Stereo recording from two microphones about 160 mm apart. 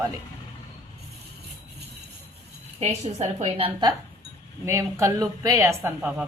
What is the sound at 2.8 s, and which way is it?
A woman's voice, 45° right (ahead or behind).